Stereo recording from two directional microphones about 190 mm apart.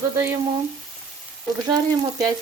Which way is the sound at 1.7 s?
20° right (ahead or behind).